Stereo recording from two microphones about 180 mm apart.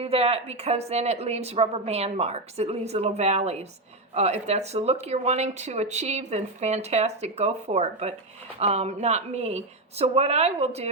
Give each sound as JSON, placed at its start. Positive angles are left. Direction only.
{"t": 0.0, "sound": "speech", "side_deg": -35}